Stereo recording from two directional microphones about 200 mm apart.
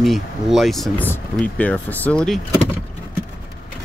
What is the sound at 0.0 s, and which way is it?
Speech, centre (ahead or behind).